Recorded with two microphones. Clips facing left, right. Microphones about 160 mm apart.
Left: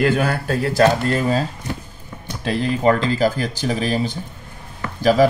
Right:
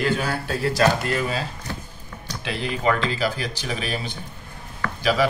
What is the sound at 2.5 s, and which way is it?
Speech, 40° left (ahead or behind).